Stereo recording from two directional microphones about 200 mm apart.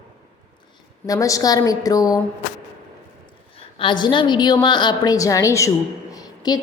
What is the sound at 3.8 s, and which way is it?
A woman's voice, 25° left (ahead or behind).